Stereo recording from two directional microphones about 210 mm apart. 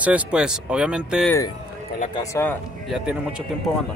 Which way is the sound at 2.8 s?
Centre (ahead or behind).